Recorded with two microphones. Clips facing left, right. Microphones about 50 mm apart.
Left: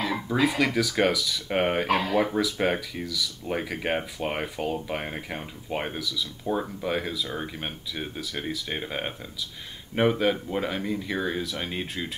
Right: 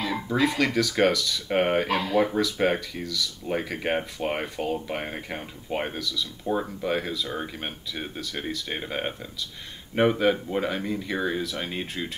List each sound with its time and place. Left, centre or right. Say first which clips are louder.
0.0 s speech: even; centre